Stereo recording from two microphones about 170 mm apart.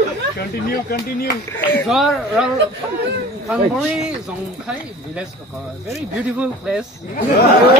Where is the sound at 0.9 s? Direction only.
65° left (ahead or behind).